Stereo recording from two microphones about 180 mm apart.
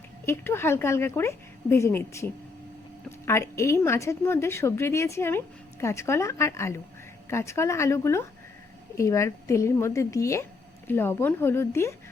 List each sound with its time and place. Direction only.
0.3 s a woman's voice: 15° left (ahead or behind)